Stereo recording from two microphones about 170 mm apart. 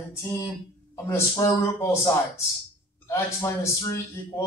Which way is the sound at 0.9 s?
20° left (ahead or behind).